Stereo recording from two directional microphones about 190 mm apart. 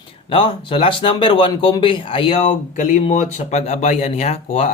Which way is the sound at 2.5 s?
40° left (ahead or behind).